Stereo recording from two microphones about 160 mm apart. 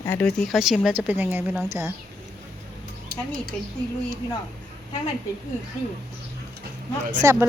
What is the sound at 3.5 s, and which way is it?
Speech, 10° left (ahead or behind).